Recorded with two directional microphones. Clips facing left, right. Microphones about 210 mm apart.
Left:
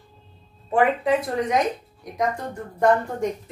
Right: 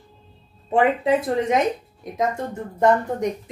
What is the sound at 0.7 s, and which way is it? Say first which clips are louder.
A woman's voice: right 1 dB; 25° right (ahead or behind).